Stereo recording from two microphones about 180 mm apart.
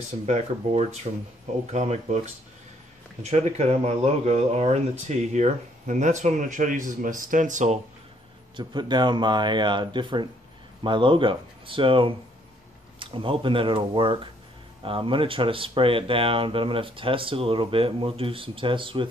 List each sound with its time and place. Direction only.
0.3 s speech: 35° right (ahead or behind)
3.2 s speech: 40° right (ahead or behind)
8.5 s speech: 25° right (ahead or behind)